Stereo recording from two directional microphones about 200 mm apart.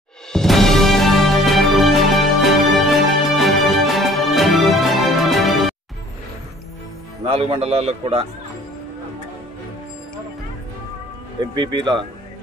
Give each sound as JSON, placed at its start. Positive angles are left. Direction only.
{"t": 0.3, "sound": "music", "side_deg": 0}
{"t": 7.2, "sound": "a man's voice", "side_deg": -30}
{"t": 11.5, "sound": "a man's voice", "side_deg": -25}